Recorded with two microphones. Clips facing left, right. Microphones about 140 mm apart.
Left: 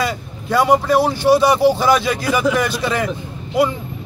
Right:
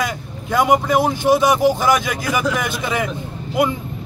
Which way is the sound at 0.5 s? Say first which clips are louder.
Left 1 dB; 15° right (ahead or behind).